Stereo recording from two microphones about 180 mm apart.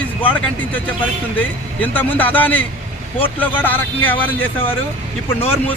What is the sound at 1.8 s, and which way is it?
Speech, 10° left (ahead or behind).